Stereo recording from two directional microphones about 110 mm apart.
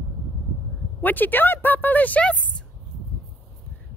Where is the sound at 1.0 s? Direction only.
15° left (ahead or behind).